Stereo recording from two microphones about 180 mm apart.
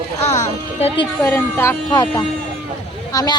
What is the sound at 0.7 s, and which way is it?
Speech, 30° left (ahead or behind).